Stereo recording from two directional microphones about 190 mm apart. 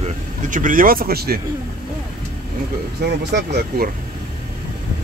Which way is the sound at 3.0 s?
60° right (ahead or behind).